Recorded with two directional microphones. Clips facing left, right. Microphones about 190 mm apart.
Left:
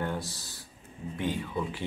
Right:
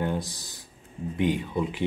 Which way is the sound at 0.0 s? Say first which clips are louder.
Right 4 dB; 15° right (ahead or behind).